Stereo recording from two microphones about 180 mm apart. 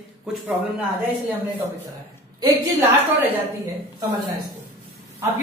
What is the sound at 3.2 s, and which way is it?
A woman's voice, 20° right (ahead or behind).